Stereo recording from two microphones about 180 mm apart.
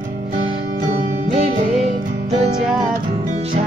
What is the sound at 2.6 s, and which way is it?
Music, 5° right (ahead or behind).